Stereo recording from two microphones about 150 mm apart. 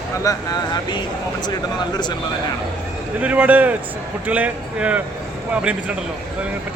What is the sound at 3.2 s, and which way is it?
Speech, 10° right (ahead or behind).